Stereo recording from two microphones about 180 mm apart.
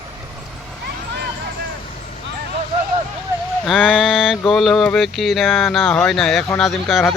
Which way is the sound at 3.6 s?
Centre (ahead or behind).